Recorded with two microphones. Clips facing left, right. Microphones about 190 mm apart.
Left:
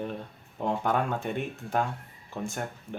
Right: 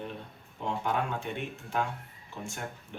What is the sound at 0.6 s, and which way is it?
Speech, 45° left (ahead or behind).